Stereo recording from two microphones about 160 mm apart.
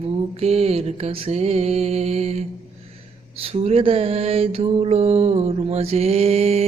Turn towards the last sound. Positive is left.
turn(degrees=-40)  # may be behind; listen again after turning